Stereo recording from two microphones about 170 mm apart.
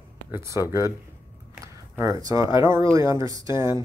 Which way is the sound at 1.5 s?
15° right (ahead or behind).